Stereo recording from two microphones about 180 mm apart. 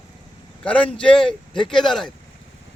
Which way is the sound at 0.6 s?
5° left (ahead or behind).